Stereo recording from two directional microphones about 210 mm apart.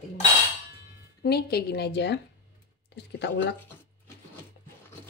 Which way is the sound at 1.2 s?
50° left (ahead or behind).